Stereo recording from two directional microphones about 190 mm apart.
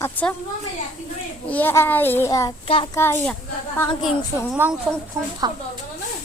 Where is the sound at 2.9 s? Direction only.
10° left (ahead or behind).